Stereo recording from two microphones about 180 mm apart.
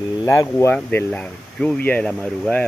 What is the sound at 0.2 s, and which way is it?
Speech, 15° left (ahead or behind).